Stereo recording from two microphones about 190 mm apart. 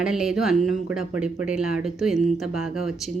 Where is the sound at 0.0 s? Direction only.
5° right (ahead or behind).